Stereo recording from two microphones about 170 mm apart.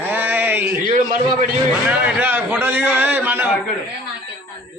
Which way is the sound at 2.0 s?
10° right (ahead or behind).